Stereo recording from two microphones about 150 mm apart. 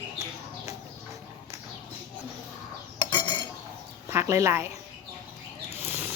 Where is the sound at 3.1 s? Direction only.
30° left (ahead or behind).